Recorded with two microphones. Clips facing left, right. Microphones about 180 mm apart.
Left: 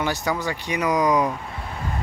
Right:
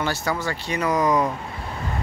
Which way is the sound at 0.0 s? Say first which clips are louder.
Left 1 dB; 15° left (ahead or behind).